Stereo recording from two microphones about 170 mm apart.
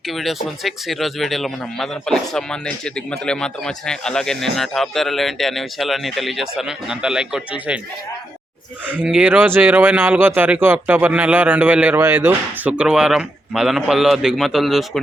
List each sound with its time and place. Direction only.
0.1 s speech: centre (ahead or behind)
8.9 s speech: 5° right (ahead or behind)